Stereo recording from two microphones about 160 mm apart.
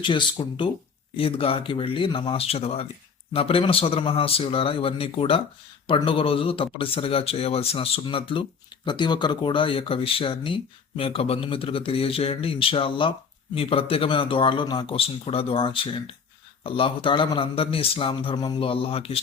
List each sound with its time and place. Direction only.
0.0 s speech: 30° left (ahead or behind)